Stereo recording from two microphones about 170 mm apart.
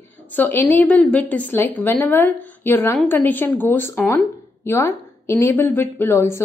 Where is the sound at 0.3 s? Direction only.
10° left (ahead or behind).